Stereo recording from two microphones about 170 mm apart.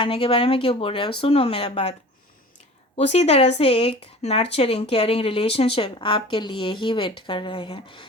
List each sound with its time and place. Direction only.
0.0 s speech: 35° left (ahead or behind)